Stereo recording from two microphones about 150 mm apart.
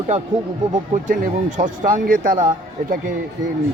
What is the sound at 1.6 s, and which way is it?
Speech, 65° right (ahead or behind).